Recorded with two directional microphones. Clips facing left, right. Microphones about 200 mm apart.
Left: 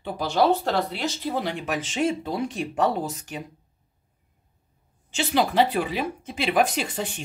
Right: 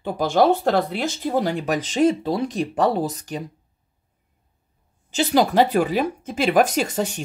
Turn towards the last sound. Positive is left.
turn(degrees=-40)  # may be behind; listen again after turning